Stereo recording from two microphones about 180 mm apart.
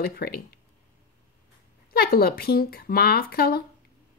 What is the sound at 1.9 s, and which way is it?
A woman's voice, 60° left (ahead or behind).